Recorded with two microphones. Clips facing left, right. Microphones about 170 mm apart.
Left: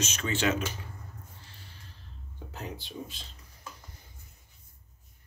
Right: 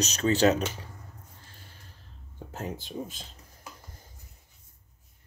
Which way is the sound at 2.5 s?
45° right (ahead or behind).